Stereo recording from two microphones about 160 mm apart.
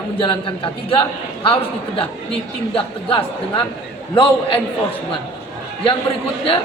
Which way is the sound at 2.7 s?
35° left (ahead or behind).